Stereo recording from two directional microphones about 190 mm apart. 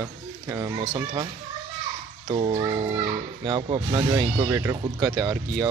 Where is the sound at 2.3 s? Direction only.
25° right (ahead or behind).